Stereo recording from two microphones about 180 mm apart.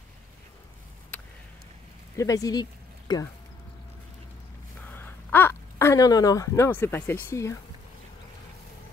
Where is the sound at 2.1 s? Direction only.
20° left (ahead or behind).